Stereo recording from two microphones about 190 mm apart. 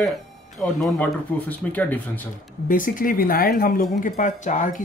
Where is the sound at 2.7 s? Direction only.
45° left (ahead or behind).